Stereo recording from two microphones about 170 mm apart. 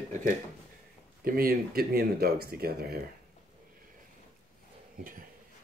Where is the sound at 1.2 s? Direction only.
60° right (ahead or behind).